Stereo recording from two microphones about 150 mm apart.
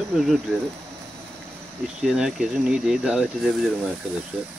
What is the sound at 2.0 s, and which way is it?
Speech, 5° right (ahead or behind).